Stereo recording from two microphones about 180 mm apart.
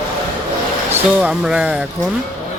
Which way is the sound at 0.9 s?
5° right (ahead or behind).